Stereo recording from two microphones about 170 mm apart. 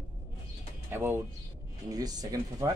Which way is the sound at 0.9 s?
15° right (ahead or behind).